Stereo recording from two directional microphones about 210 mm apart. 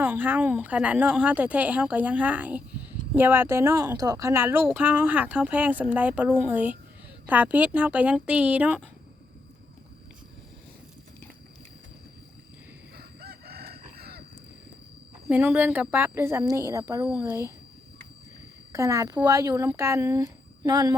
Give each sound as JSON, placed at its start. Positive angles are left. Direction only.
{"t": 0.0, "sound": "speech", "side_deg": -10}
{"t": 13.0, "sound": "chicken", "side_deg": -50}
{"t": 15.3, "sound": "speech", "side_deg": -5}
{"t": 18.7, "sound": "speech", "side_deg": -15}